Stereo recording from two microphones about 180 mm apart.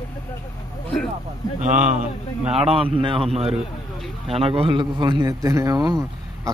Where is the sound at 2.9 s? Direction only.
30° right (ahead or behind).